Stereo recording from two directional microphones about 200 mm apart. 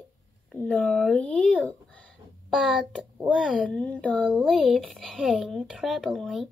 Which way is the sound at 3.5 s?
5° left (ahead or behind).